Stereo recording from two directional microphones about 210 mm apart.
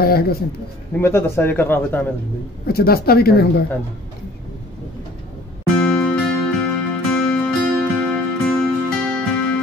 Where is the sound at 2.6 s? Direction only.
45° left (ahead or behind).